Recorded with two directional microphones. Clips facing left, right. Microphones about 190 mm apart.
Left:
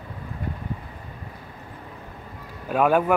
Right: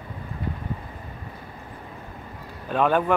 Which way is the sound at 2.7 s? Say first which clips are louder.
Left 2 dB; 10° left (ahead or behind).